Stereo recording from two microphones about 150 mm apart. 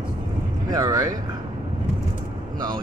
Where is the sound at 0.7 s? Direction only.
25° right (ahead or behind).